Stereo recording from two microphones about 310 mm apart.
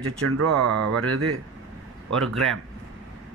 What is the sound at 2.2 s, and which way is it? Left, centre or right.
Speech, centre.